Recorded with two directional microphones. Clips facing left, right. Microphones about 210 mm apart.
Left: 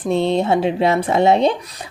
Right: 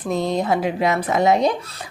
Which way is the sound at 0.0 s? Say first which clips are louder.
Left 4 dB; 30° left (ahead or behind).